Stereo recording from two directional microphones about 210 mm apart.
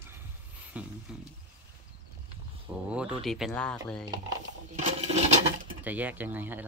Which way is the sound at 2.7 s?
5° right (ahead or behind).